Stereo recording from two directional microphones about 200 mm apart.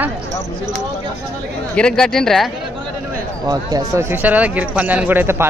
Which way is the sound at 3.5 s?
20° right (ahead or behind).